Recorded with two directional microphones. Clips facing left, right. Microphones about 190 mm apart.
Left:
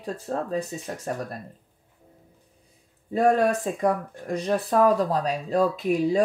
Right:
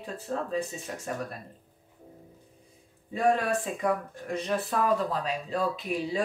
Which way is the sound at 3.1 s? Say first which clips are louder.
Left 5 dB; 40° left (ahead or behind).